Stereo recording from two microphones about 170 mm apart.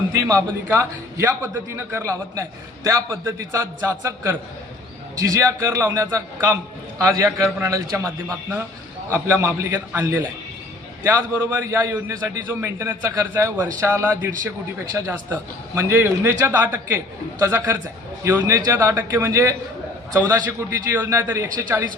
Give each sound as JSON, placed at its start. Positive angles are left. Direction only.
{"t": 0.1, "sound": "a man's voice", "side_deg": -20}